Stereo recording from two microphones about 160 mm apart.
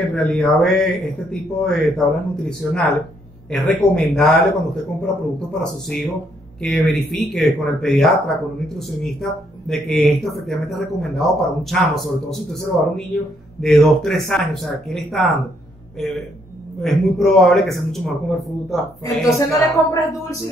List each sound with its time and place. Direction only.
0.1 s a man's voice: 5° left (ahead or behind)
19.2 s speech: 20° left (ahead or behind)